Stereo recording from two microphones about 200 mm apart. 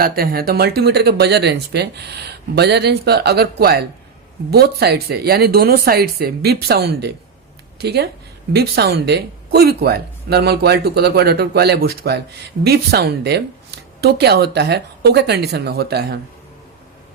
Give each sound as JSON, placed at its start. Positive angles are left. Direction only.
{"t": 0.0, "sound": "speech", "side_deg": -50}